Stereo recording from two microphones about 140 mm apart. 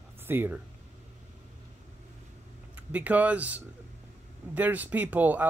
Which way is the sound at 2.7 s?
10° right (ahead or behind).